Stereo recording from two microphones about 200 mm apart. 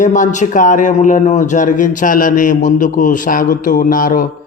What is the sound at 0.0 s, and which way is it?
A man's voice, 40° left (ahead or behind).